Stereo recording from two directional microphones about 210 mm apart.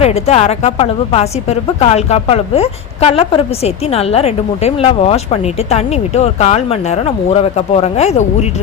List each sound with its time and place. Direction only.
0.0 s a woman's voice: 30° left (ahead or behind)